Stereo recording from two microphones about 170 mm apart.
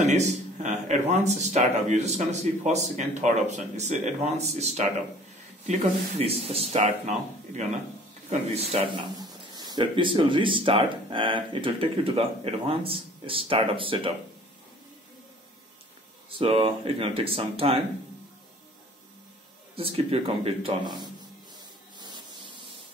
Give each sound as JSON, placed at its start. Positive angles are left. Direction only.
{"t": 0.0, "sound": "speech", "side_deg": -45}
{"t": 9.6, "sound": "speech", "side_deg": -25}
{"t": 16.3, "sound": "speech", "side_deg": -30}
{"t": 19.7, "sound": "speech", "side_deg": -35}
{"t": 21.9, "sound": "rub", "side_deg": -25}